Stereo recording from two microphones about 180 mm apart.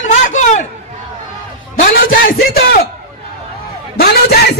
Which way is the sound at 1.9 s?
50° left (ahead or behind).